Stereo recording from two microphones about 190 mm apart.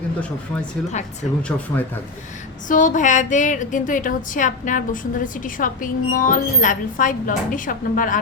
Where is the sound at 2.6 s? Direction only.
45° left (ahead or behind).